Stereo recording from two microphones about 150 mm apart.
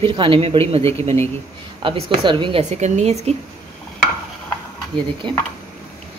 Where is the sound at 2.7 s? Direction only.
50° right (ahead or behind).